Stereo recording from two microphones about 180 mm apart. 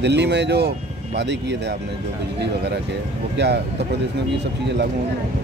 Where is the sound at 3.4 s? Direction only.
70° right (ahead or behind).